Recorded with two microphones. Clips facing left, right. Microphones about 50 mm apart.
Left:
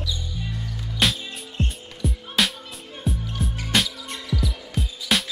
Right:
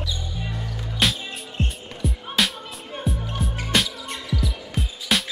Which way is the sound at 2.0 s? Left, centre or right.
Centre.